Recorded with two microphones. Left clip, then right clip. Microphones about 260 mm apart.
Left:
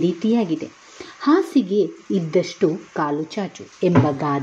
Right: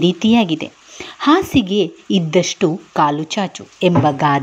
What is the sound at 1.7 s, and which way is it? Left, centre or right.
Speech, centre.